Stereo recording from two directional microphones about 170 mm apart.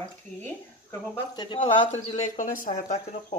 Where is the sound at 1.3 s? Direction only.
30° left (ahead or behind).